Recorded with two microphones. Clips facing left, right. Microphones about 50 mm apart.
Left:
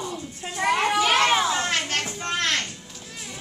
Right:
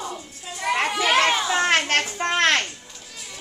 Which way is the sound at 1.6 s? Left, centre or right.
Right.